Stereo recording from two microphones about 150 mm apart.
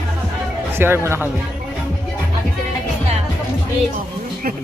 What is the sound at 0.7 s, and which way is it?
Speech, 15° right (ahead or behind).